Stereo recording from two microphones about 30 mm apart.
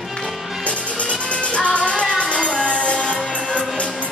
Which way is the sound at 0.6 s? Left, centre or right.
Left.